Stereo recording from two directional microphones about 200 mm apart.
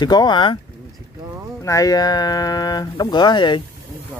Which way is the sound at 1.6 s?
15° left (ahead or behind).